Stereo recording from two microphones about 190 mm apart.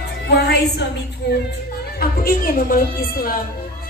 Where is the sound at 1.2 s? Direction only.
65° left (ahead or behind).